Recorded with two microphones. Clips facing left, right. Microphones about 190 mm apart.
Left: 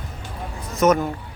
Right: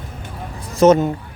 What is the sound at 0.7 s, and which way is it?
Speech, 30° right (ahead or behind).